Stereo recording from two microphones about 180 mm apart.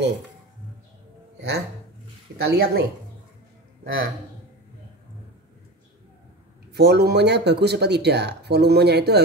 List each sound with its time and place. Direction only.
2.4 s speech: 60° right (ahead or behind)
3.8 s a man's voice: 55° right (ahead or behind)
6.7 s speech: 65° right (ahead or behind)